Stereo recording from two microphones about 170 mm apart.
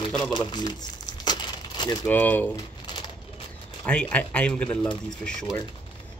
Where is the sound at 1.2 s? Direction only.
25° left (ahead or behind).